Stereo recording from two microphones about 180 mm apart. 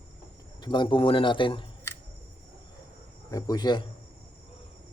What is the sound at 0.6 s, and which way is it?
A man's voice, 25° left (ahead or behind).